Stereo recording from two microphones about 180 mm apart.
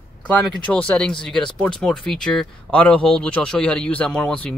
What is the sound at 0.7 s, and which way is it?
Speech, 5° left (ahead or behind).